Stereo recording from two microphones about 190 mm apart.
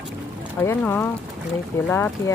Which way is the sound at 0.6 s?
10° left (ahead or behind).